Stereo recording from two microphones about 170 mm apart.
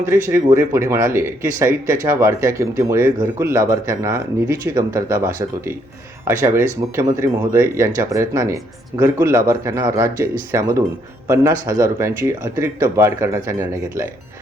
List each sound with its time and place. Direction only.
0.0 s speech: 15° right (ahead or behind)